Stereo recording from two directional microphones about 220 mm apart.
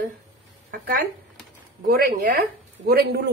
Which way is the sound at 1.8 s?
40° right (ahead or behind).